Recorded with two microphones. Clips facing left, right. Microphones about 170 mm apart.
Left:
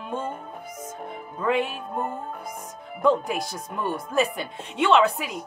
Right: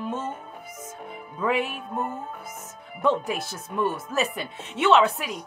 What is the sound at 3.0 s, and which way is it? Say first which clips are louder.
Speech: left 2 dB; centre (ahead or behind).